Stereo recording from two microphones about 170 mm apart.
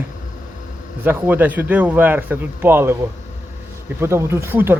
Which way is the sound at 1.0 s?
10° right (ahead or behind).